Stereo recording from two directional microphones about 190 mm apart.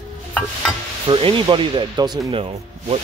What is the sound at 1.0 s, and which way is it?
Speech, 25° right (ahead or behind).